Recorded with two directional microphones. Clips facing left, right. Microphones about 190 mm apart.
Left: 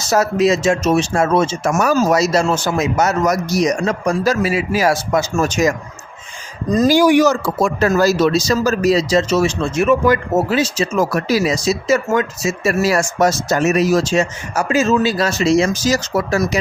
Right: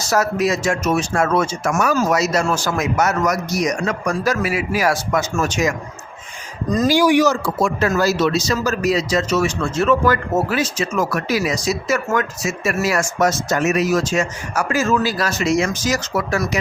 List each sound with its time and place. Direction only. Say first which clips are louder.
0.1 s speech: left 4 dB; 25° left (ahead or behind)
5.4 s speech: left 5 dB; 40° left (ahead or behind)
6.7 s speech: left 3 dB; 45° left (ahead or behind); by 9.6 s 30° left (ahead or behind)
9.7 s speech: left 2 dB; 15° left (ahead or behind)